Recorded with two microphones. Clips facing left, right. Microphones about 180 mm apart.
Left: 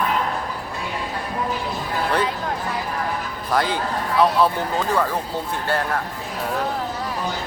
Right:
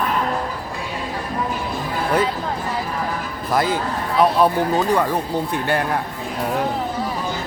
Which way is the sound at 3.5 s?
10° right (ahead or behind).